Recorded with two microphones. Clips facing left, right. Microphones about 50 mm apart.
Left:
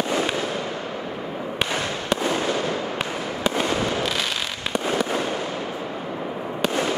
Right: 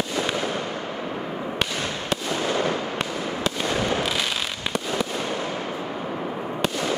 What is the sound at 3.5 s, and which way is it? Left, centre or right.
Fireworks, left.